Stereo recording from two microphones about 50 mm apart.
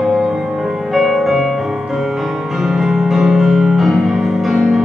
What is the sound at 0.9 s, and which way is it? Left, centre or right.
Music, centre.